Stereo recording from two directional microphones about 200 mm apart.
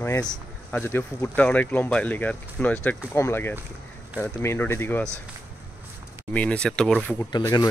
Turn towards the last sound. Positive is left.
turn(degrees=20)  # may be behind; listen again after turning